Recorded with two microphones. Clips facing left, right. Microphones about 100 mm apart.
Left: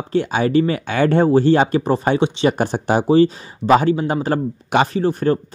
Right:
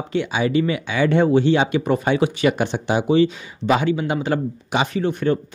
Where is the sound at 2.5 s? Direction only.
40° left (ahead or behind).